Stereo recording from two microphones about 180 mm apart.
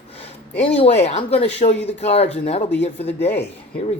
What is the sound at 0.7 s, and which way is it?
Speech, 35° left (ahead or behind).